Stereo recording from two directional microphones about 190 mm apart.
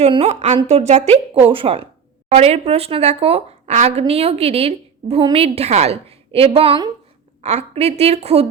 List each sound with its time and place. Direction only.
0.0 s a woman's voice: 35° right (ahead or behind)